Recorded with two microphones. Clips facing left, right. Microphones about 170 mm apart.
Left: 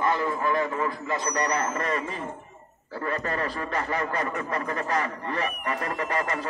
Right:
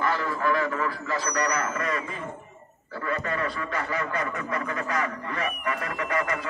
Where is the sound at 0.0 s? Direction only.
20° left (ahead or behind).